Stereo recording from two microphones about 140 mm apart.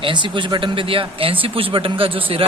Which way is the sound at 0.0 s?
35° right (ahead or behind).